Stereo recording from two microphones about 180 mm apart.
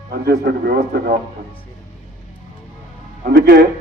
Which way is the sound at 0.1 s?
60° right (ahead or behind).